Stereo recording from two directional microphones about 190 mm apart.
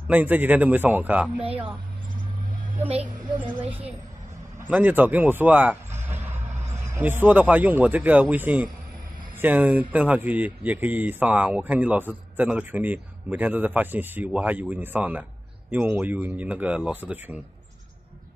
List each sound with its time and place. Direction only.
0.1 s speech: 10° right (ahead or behind)
1.4 s speech: 30° right (ahead or behind)
4.6 s speech: 10° right (ahead or behind)
7.0 s speech: 10° right (ahead or behind)